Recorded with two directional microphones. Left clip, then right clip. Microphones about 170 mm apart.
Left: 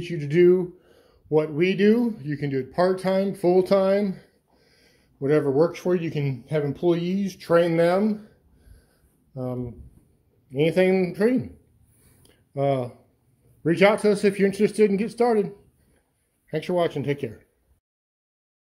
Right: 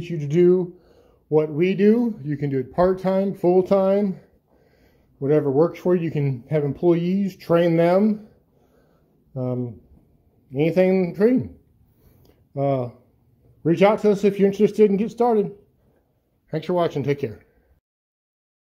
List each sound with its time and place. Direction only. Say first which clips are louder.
0.0 s speech: even; 10° right (ahead or behind)
5.2 s speech: right 2 dB; 10° right (ahead or behind)
9.4 s speech: right 4 dB; 20° right (ahead or behind)
12.2 s a sound: right 1 dB; 10° right (ahead or behind)
13.7 s speech: right 2 dB; 10° right (ahead or behind)
16.4 s speech: right 2 dB; 5° right (ahead or behind)